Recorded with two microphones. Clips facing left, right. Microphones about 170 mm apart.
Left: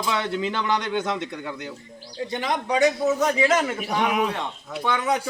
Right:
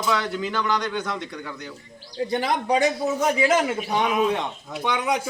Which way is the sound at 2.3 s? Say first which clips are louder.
Right 2 dB; 35° right (ahead or behind).